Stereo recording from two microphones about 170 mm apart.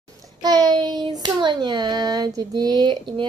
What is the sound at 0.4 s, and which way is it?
A child's voice, 25° right (ahead or behind).